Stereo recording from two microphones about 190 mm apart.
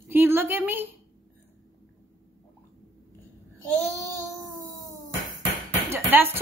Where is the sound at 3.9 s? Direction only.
20° right (ahead or behind).